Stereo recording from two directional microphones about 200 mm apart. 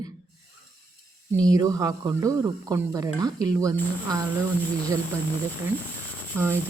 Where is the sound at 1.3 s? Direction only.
15° right (ahead or behind).